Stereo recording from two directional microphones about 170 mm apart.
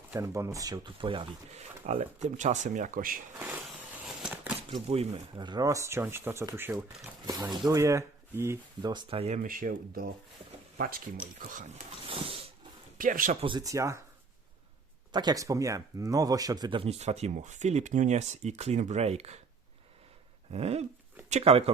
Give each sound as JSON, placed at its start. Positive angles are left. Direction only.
{"t": 0.1, "sound": "speech", "side_deg": -15}
{"t": 3.3, "sound": "a sound", "side_deg": -15}
{"t": 4.7, "sound": "speech", "side_deg": -35}
{"t": 7.3, "sound": "speech", "side_deg": -25}
{"t": 8.9, "sound": "speech", "side_deg": -30}
{"t": 11.3, "sound": "speech", "side_deg": -50}
{"t": 12.0, "sound": "a sound", "side_deg": -35}
{"t": 13.0, "sound": "speech", "side_deg": -50}
{"t": 13.4, "sound": "speech", "side_deg": -25}
{"t": 15.1, "sound": "speech", "side_deg": -25}
{"t": 20.5, "sound": "speech", "side_deg": -35}